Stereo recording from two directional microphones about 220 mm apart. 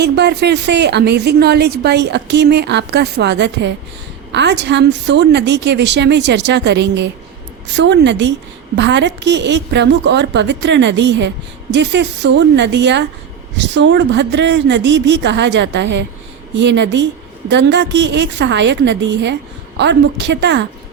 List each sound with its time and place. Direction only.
0.0 s a woman's voice: 50° right (ahead or behind)